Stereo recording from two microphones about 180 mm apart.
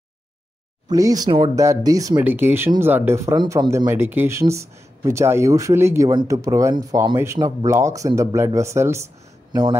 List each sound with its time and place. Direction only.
0.8 s speech: 20° right (ahead or behind)